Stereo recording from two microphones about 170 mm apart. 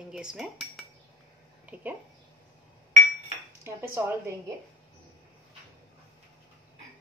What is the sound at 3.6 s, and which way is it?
Cutlery, 15° right (ahead or behind).